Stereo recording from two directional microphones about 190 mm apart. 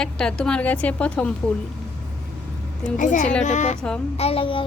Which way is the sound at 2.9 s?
40° left (ahead or behind).